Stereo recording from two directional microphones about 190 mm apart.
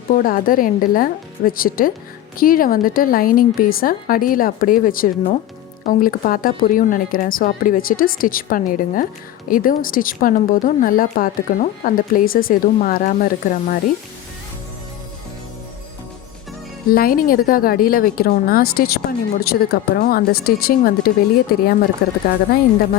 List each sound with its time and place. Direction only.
0.2 s a woman's voice: 45° left (ahead or behind)
16.9 s a woman's voice: 50° left (ahead or behind)